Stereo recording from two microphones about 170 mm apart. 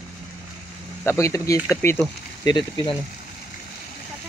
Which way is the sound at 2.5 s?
30° left (ahead or behind).